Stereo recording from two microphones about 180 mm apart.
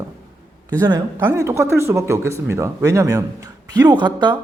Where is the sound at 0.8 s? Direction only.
20° right (ahead or behind).